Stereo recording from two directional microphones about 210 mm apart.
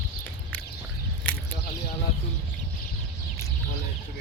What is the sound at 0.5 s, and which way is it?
Duck, 10° left (ahead or behind).